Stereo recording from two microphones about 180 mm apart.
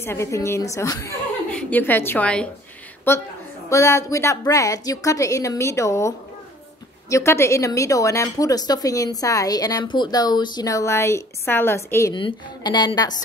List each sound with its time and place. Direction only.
0.0 s a woman's voice: 15° left (ahead or behind)
12.1 s speech: 25° left (ahead or behind)